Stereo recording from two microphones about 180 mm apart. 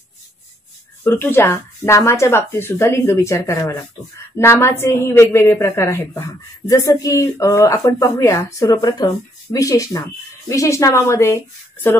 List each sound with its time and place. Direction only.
1.0 s a woman's voice: 15° left (ahead or behind)